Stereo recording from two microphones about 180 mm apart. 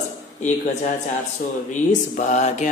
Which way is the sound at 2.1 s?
40° left (ahead or behind).